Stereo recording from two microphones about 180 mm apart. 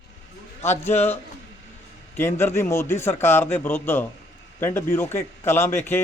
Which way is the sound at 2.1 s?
15° left (ahead or behind).